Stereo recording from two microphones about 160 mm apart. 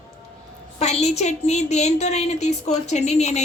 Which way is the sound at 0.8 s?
45° left (ahead or behind).